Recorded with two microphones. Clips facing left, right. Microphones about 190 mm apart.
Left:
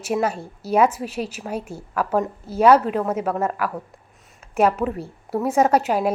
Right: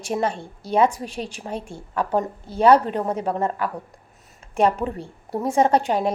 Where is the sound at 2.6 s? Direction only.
30° right (ahead or behind).